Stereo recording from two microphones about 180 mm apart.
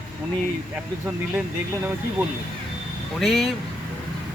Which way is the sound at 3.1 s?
Centre (ahead or behind).